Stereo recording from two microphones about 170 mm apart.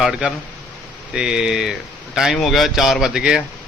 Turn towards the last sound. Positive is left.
turn(degrees=-5)  # may be behind; listen again after turning